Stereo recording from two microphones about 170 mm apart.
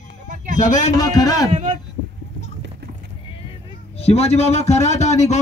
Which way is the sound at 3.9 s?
35° left (ahead or behind).